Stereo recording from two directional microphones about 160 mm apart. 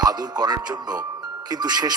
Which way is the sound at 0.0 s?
25° right (ahead or behind).